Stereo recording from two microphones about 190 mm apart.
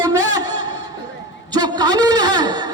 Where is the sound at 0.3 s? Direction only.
20° right (ahead or behind).